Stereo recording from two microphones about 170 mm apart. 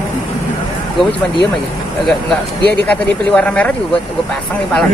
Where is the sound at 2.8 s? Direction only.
10° left (ahead or behind).